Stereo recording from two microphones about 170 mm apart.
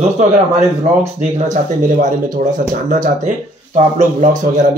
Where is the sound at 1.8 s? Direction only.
50° right (ahead or behind).